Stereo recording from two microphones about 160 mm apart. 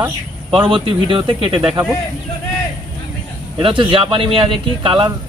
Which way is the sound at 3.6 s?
35° right (ahead or behind).